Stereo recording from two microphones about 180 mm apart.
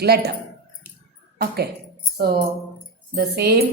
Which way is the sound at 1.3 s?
60° right (ahead or behind).